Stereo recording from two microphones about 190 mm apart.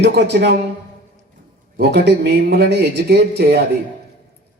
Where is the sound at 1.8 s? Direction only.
60° right (ahead or behind).